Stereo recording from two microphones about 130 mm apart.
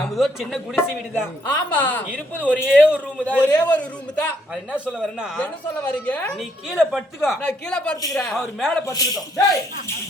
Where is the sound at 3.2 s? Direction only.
10° left (ahead or behind).